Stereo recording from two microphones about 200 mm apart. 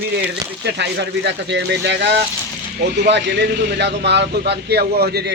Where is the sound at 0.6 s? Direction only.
55° right (ahead or behind).